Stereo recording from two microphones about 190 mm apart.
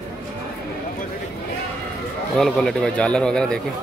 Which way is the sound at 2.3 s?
Centre (ahead or behind).